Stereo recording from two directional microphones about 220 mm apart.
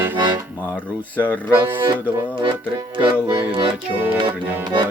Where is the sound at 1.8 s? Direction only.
20° right (ahead or behind).